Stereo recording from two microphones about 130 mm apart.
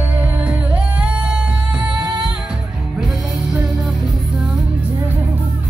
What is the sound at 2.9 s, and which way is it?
Music, 5° right (ahead or behind).